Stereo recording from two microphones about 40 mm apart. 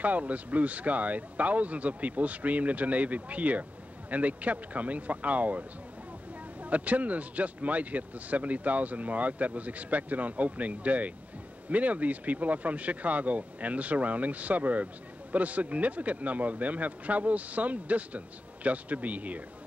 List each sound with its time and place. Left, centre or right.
0.0 s speech: right